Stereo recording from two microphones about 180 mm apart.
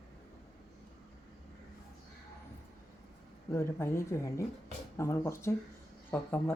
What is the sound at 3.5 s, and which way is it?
Speech, 15° left (ahead or behind).